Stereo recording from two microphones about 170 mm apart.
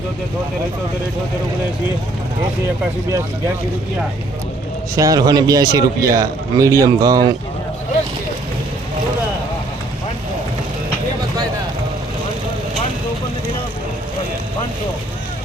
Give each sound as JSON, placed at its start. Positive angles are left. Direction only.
{"t": 4.9, "sound": "a man's voice", "side_deg": -20}